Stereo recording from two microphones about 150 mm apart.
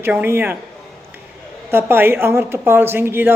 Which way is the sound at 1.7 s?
15° right (ahead or behind).